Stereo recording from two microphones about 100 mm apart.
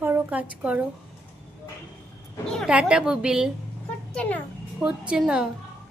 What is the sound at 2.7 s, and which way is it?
Speech, 10° right (ahead or behind).